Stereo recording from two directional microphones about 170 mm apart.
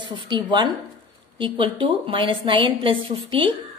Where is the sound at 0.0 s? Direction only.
30° right (ahead or behind).